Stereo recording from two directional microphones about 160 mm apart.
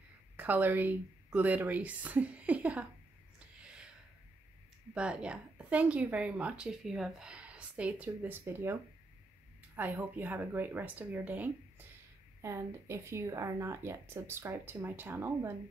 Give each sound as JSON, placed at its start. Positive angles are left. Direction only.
{"t": 0.4, "sound": "a woman's voice", "side_deg": -10}
{"t": 3.3, "sound": "a sound", "side_deg": -5}
{"t": 4.9, "sound": "a woman's voice", "side_deg": -5}
{"t": 9.8, "sound": "a woman's voice", "side_deg": -10}